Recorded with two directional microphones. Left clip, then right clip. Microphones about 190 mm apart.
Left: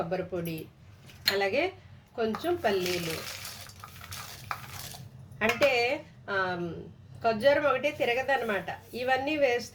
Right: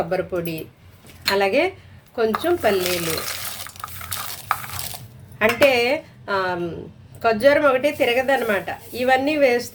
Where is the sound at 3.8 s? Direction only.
30° right (ahead or behind).